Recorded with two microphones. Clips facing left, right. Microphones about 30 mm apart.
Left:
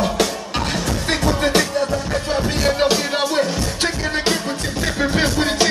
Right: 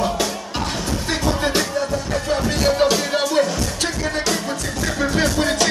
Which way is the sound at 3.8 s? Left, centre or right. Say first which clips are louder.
Left 3 dB; left.